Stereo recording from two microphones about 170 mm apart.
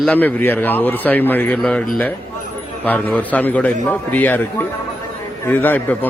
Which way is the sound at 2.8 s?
10° left (ahead or behind).